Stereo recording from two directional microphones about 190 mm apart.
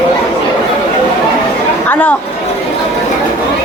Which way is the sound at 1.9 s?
10° left (ahead or behind).